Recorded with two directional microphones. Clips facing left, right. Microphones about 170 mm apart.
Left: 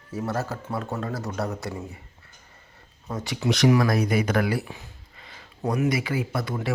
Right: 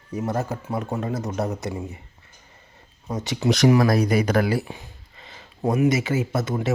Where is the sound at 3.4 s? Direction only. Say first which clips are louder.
Right 3 dB; 40° right (ahead or behind).